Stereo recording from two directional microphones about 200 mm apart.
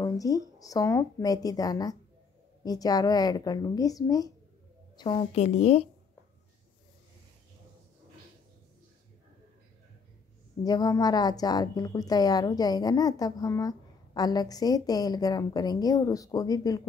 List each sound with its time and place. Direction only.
0.0 s a woman's voice: 15° left (ahead or behind)
5.4 s speech: 35° left (ahead or behind)
10.6 s a woman's voice: 20° left (ahead or behind)